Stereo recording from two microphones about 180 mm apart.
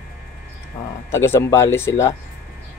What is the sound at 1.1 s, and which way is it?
Speech, 15° left (ahead or behind).